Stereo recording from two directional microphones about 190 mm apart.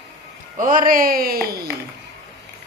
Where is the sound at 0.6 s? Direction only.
45° right (ahead or behind).